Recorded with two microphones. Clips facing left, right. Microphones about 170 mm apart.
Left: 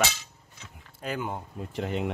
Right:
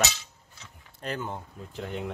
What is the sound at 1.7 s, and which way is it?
Speech, 75° left (ahead or behind).